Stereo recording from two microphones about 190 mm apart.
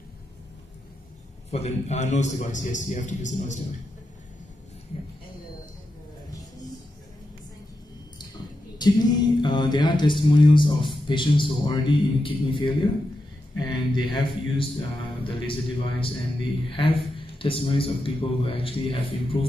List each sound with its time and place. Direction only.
1.5 s a man's voice: 35° left (ahead or behind)
8.7 s a man's voice: 20° left (ahead or behind)